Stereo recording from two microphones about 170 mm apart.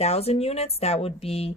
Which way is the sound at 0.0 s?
35° left (ahead or behind).